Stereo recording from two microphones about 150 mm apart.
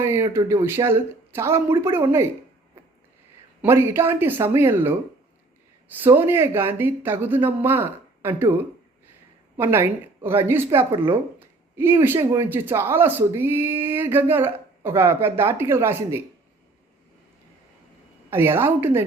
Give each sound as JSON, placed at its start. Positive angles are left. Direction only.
{"t": 0.0, "sound": "speech", "side_deg": -15}
{"t": 3.6, "sound": "speech", "side_deg": -15}
{"t": 6.0, "sound": "speech", "side_deg": -15}
{"t": 9.6, "sound": "speech", "side_deg": -15}
{"t": 18.3, "sound": "speech", "side_deg": -15}